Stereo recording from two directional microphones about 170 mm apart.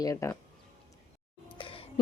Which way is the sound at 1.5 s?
30° left (ahead or behind).